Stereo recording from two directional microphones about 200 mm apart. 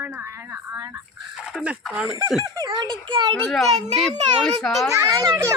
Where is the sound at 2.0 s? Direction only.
15° right (ahead or behind).